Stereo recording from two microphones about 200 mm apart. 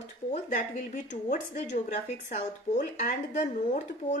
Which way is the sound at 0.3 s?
40° left (ahead or behind).